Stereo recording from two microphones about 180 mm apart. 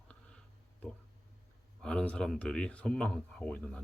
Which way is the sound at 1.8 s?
5° left (ahead or behind).